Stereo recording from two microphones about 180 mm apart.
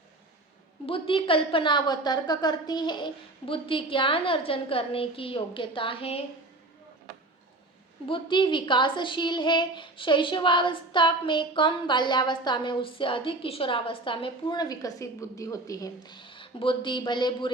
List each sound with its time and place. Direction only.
0.9 s a woman's voice: 30° left (ahead or behind)
8.0 s a woman's voice: 30° left (ahead or behind)